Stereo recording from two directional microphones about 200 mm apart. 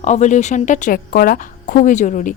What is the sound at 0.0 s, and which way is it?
A woman's voice, 35° left (ahead or behind).